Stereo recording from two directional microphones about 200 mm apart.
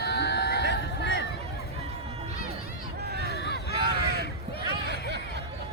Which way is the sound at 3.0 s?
55° right (ahead or behind).